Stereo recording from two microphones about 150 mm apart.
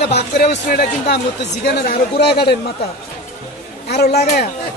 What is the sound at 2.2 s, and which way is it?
Speech, 90° left.